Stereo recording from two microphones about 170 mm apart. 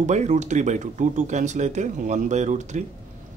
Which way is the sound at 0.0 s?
45° right (ahead or behind).